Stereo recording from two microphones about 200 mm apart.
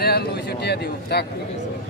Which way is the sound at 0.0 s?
50° left (ahead or behind).